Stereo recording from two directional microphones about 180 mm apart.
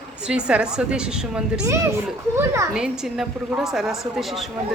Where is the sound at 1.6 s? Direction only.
15° right (ahead or behind).